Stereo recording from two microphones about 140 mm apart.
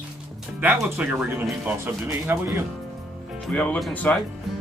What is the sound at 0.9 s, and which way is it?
Speech, 10° right (ahead or behind).